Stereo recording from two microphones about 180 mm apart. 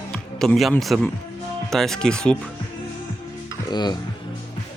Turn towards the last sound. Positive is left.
turn(degrees=25)  # may be behind; listen again after turning